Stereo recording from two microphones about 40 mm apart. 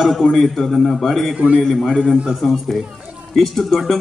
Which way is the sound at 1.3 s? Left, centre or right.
Right.